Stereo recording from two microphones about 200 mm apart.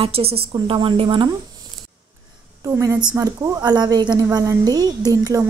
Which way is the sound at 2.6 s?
15° right (ahead or behind).